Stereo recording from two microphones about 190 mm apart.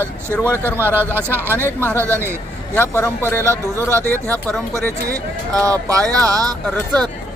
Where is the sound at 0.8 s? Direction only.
10° right (ahead or behind).